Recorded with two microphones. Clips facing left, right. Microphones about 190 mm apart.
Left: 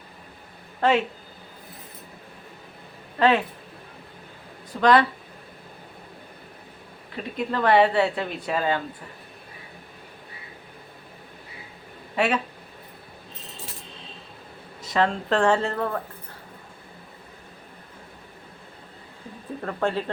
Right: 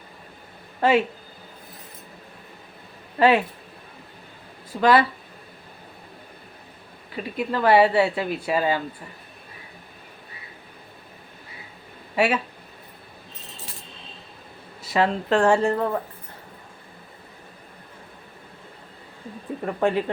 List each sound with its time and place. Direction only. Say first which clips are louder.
0.8 s speech: right 2 dB; 5° right (ahead or behind)
3.2 s speech: right 2 dB; 10° right (ahead or behind)
4.8 s speech: even; 5° right (ahead or behind)
7.2 s speech: right 1 dB; 5° right (ahead or behind)
12.1 s speech: right 2 dB; 5° right (ahead or behind)
14.8 s speech: right 1 dB; 10° right (ahead or behind)
19.6 s speech: right 4 dB; 15° right (ahead or behind)